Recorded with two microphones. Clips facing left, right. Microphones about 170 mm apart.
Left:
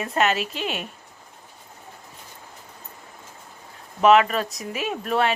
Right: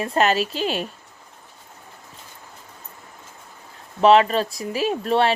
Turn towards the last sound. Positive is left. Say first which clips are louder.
# right 4 dB
turn(degrees=-30)  # may be behind; listen again after turning